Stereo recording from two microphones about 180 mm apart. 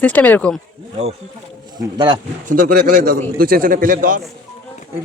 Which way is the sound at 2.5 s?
50° right (ahead or behind).